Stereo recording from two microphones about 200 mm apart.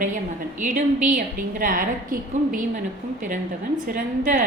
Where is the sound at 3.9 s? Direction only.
40° right (ahead or behind).